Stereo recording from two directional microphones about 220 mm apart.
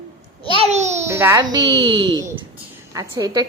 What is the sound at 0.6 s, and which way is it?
Speech, 30° right (ahead or behind).